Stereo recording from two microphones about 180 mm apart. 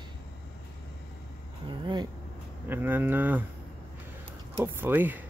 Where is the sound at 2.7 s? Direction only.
10° right (ahead or behind).